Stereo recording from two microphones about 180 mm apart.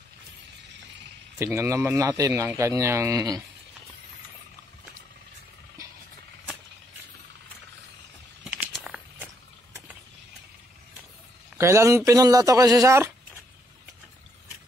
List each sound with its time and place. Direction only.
1.4 s speech: 15° right (ahead or behind)
8.7 s a sound: 5° right (ahead or behind)
11.5 s speech: 15° right (ahead or behind)